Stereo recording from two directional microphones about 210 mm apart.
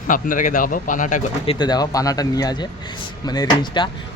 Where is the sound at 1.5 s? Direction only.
20° left (ahead or behind).